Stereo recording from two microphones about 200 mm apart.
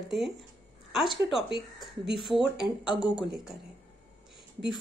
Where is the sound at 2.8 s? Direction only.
25° left (ahead or behind).